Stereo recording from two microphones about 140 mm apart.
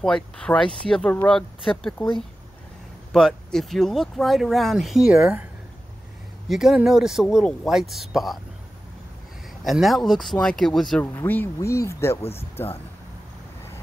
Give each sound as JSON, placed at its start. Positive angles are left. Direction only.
{"t": 0.0, "sound": "speech", "side_deg": 5}
{"t": 3.1, "sound": "speech", "side_deg": 5}
{"t": 6.5, "sound": "speech", "side_deg": -5}
{"t": 9.6, "sound": "speech", "side_deg": 0}
{"t": 11.1, "sound": "speech", "side_deg": 15}
{"t": 12.2, "sound": "speech", "side_deg": 45}